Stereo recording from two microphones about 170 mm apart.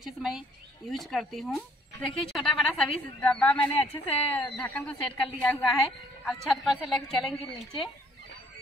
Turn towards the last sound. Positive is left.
turn(degrees=0)  # may be behind; listen again after turning